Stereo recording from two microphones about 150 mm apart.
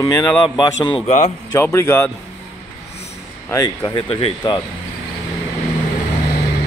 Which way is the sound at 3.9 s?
35° left (ahead or behind).